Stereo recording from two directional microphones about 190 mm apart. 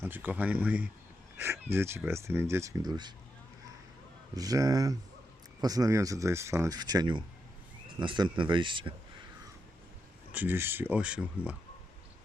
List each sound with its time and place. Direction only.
0.0 s speech: 10° right (ahead or behind)
4.4 s speech: 20° right (ahead or behind)
10.3 s speech: 10° right (ahead or behind)